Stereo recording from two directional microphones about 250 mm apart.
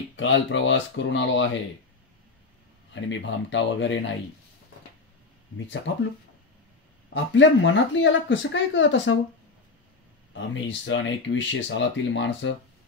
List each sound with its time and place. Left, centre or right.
0.1 s speech: left
2.9 s speech: left
5.9 s speech: left
7.3 s speech: left
10.3 s speech: left